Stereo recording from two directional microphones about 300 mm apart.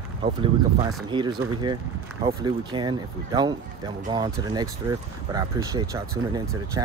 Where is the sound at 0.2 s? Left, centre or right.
Centre.